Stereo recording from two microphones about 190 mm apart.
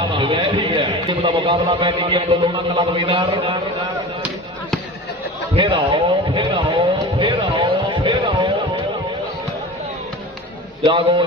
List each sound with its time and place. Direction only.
0.0 s a man's voice: 25° right (ahead or behind)
5.5 s a sound: 25° right (ahead or behind)
10.8 s a man's voice: 30° right (ahead or behind)